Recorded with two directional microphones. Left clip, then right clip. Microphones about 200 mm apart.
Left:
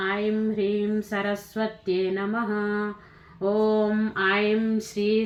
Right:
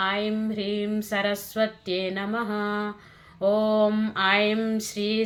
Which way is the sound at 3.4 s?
50° right (ahead or behind).